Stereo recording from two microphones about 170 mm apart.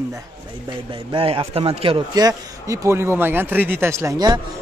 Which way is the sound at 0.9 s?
30° right (ahead or behind).